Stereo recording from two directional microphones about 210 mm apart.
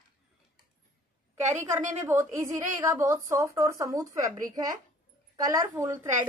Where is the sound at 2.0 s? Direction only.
15° right (ahead or behind).